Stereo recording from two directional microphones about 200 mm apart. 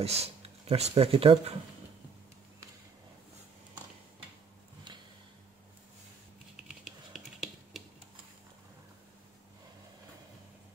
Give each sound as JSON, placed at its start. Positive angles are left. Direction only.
{"t": 0.0, "sound": "speech", "side_deg": -30}
{"t": 6.5, "sound": "typing", "side_deg": 0}